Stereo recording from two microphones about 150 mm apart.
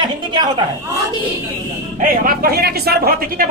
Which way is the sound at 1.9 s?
65° right (ahead or behind).